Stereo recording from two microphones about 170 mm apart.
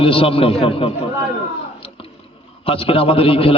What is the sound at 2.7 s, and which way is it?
Speech, 35° left (ahead or behind).